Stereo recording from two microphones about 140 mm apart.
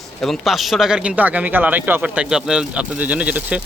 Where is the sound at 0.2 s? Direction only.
Centre (ahead or behind).